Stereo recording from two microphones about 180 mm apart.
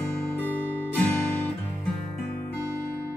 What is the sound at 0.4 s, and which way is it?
Guitar, 10° left (ahead or behind).